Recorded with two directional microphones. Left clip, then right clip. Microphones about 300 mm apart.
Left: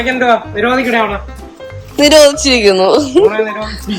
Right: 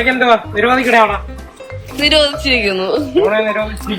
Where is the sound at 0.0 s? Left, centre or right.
Right.